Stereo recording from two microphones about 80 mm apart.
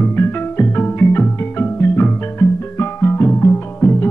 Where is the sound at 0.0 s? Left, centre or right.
Left.